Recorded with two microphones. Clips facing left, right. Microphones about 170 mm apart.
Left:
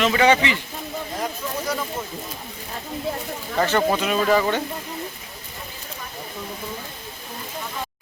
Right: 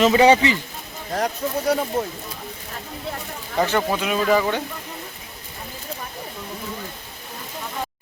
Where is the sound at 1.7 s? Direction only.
65° right (ahead or behind).